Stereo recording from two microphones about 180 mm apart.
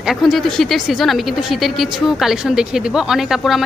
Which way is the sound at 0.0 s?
Centre (ahead or behind).